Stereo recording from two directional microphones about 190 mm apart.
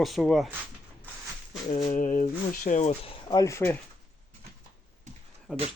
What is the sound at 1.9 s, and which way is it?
Speech, 40° left (ahead or behind).